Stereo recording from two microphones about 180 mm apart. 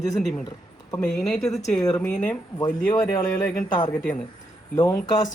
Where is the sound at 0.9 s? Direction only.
5° left (ahead or behind).